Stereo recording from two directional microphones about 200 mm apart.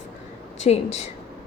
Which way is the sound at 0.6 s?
35° left (ahead or behind).